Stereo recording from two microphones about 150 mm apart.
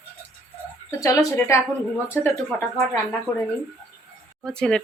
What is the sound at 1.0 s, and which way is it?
Speech, 20° left (ahead or behind).